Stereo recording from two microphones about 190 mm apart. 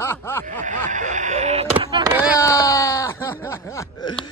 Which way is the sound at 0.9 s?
40° right (ahead or behind).